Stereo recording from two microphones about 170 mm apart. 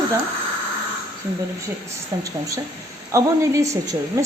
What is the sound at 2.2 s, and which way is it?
A woman's voice, 20° right (ahead or behind).